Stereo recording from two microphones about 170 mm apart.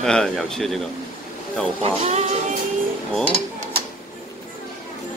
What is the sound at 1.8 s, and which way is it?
Speech, 40° right (ahead or behind).